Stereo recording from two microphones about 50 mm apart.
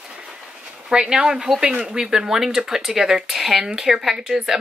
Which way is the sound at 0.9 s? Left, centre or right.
Centre.